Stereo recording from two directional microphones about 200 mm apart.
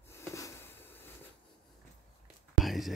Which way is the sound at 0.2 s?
15° left (ahead or behind).